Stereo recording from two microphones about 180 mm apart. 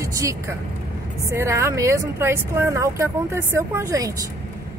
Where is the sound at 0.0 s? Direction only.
15° right (ahead or behind).